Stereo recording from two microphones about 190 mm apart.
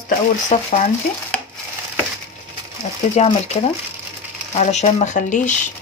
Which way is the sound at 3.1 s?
30° left (ahead or behind).